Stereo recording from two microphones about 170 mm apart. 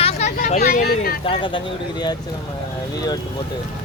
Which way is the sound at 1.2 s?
30° left (ahead or behind).